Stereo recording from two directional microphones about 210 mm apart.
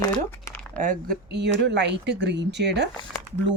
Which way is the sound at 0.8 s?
40° right (ahead or behind).